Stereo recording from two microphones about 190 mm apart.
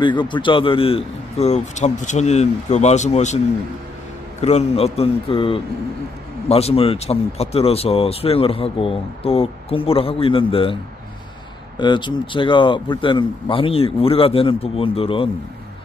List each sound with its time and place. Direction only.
0.0 s a man's voice: 25° left (ahead or behind)
4.4 s a man's voice: 35° left (ahead or behind)
11.8 s speech: 25° left (ahead or behind)